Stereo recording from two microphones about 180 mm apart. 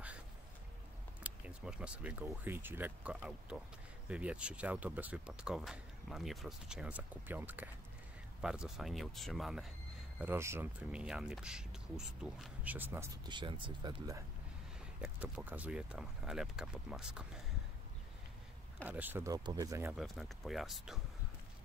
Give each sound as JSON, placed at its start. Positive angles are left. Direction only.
{"t": 1.2, "sound": "speech", "side_deg": -5}
{"t": 10.2, "sound": "speech", "side_deg": -15}
{"t": 13.2, "sound": "speech", "side_deg": -25}
{"t": 15.0, "sound": "speech", "side_deg": -5}
{"t": 18.9, "sound": "speech", "side_deg": -10}
{"t": 20.0, "sound": "speech", "side_deg": 0}